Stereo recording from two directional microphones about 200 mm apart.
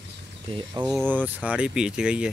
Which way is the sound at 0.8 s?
Centre (ahead or behind).